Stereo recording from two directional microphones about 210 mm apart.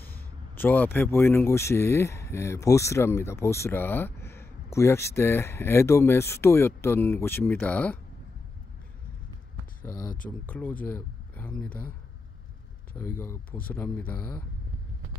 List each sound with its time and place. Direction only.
0.0 s speech: 10° left (ahead or behind)
9.8 s speech: 20° left (ahead or behind)
10.4 s speech: 10° left (ahead or behind)
12.9 s speech: 10° left (ahead or behind)